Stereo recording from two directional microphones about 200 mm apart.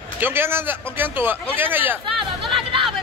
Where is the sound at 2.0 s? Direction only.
25° right (ahead or behind).